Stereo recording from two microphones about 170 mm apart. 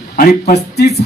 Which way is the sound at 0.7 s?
75° left (ahead or behind).